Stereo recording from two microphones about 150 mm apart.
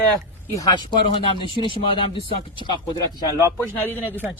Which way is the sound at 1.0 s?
35° left (ahead or behind).